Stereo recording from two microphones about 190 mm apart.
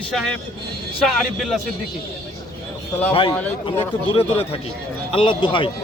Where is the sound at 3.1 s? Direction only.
30° left (ahead or behind).